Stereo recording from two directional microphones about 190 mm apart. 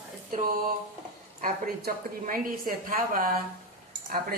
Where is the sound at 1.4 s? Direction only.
45° right (ahead or behind).